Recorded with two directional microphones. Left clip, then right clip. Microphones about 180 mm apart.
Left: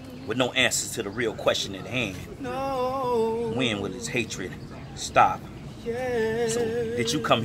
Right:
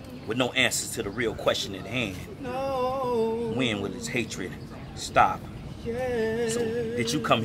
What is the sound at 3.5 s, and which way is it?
A man's voice, 5° left (ahead or behind).